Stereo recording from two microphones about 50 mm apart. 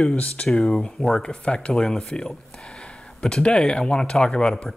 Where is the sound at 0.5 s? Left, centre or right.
Centre.